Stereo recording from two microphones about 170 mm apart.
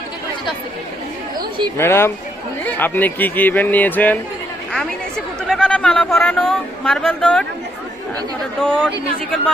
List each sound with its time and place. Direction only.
1.8 s speech: 15° left (ahead or behind)
6.4 s speech: centre (ahead or behind)
8.6 s speech: 5° left (ahead or behind)